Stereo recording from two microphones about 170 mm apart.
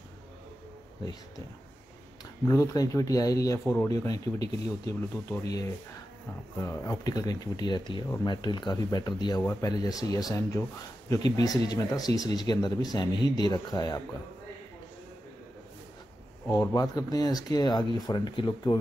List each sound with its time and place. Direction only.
2.4 s speech: 20° left (ahead or behind)
9.4 s speech: 10° left (ahead or behind)
9.7 s speech: 20° left (ahead or behind)
16.4 s speech: 20° left (ahead or behind)